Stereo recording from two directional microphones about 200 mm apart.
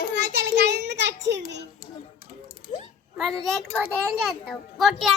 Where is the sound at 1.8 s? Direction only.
50° left (ahead or behind).